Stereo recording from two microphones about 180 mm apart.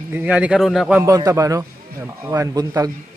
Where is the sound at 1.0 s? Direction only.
20° right (ahead or behind).